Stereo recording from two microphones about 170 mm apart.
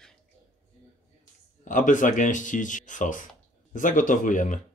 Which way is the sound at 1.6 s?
50° left (ahead or behind).